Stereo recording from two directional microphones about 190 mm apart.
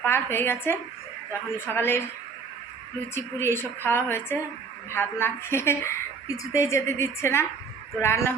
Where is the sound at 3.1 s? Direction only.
10° left (ahead or behind).